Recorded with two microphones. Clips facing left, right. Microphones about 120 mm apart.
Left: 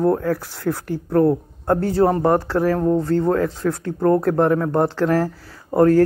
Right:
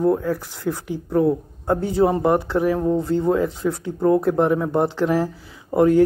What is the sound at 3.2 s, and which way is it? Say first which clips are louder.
Speech: left 1 dB; 10° right (ahead or behind).